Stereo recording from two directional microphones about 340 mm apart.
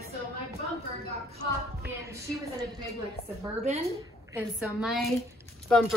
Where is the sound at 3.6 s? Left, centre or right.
Centre.